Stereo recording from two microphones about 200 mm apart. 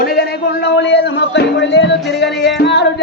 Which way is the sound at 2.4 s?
55° left (ahead or behind).